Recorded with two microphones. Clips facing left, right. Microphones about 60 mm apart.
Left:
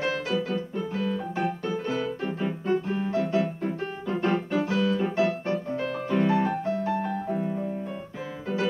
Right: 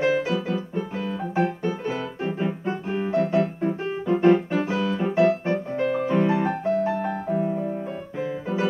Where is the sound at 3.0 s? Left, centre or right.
Right.